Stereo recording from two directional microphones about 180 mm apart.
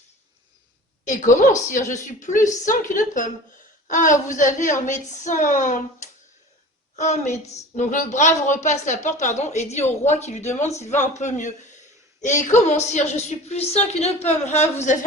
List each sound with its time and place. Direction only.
1.0 s a woman's voice: 45° left (ahead or behind)